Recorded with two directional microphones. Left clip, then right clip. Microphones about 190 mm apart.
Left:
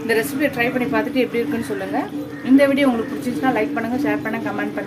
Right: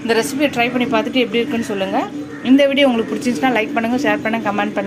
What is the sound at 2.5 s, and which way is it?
A woman's voice, 25° right (ahead or behind).